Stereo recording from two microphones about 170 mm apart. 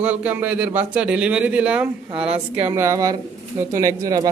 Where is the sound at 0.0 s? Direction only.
10° right (ahead or behind).